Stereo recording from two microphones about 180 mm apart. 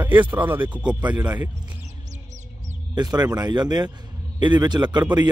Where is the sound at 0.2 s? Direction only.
10° right (ahead or behind).